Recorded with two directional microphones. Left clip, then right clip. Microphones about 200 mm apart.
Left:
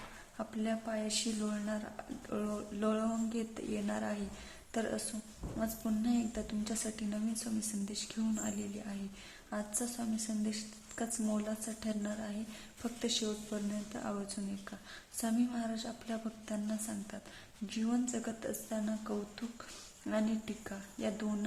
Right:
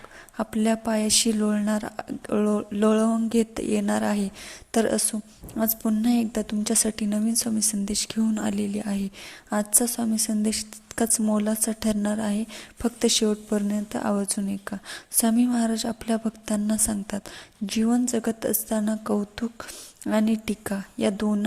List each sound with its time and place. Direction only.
0.3 s speech: 40° right (ahead or behind)